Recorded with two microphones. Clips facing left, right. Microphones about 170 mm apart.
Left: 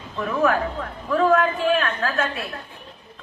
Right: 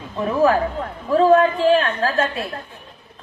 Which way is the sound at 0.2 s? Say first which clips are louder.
Right 4 dB; 30° right (ahead or behind).